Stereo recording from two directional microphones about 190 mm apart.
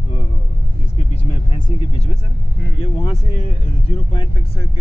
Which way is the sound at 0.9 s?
30° left (ahead or behind).